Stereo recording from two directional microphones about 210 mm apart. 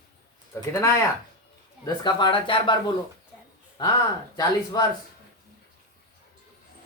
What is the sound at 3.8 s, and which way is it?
A man's voice, 20° left (ahead or behind).